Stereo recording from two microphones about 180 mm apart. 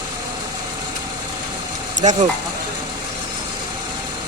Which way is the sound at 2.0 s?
40° right (ahead or behind).